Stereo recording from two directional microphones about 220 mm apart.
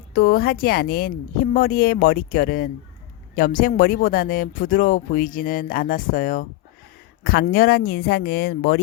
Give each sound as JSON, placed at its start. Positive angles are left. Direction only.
{"t": 0.1, "sound": "speech", "side_deg": 45}